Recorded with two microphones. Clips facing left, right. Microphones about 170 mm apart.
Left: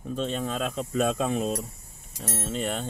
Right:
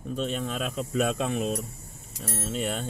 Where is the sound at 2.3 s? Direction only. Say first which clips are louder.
Even; 5° right (ahead or behind).